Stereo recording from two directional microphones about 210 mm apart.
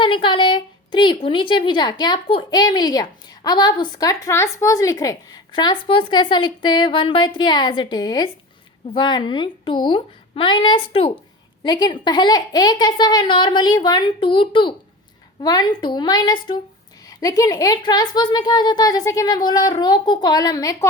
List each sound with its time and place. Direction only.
0.0 s a woman's voice: 25° left (ahead or behind)